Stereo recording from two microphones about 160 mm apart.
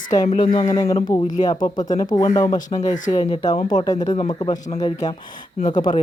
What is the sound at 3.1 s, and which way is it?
Speech, 25° left (ahead or behind).